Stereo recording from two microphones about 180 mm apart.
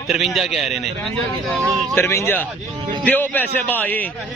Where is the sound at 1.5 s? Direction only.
10° left (ahead or behind).